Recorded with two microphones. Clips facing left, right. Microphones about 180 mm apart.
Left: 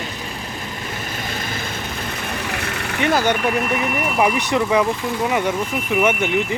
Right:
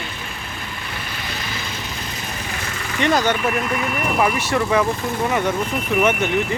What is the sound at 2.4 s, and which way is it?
Vehicle, 65° left (ahead or behind).